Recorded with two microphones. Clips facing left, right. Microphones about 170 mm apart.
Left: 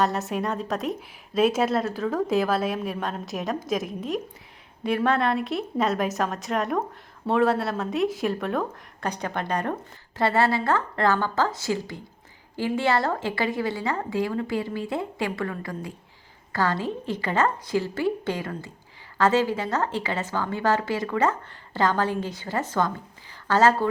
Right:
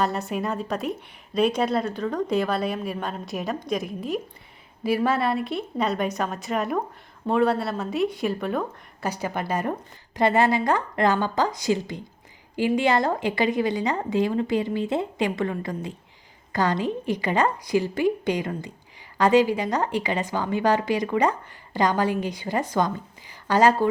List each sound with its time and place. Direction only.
0.0 s speech: centre (ahead or behind)
10.2 s a woman's voice: 15° right (ahead or behind)